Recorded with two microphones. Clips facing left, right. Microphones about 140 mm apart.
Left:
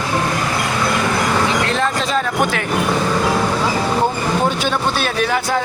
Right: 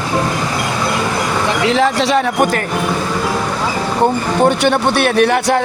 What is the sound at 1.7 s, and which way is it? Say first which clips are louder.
Speech: right 5 dB; 90° right.